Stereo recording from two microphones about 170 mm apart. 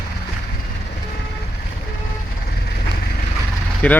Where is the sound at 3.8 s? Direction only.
10° left (ahead or behind).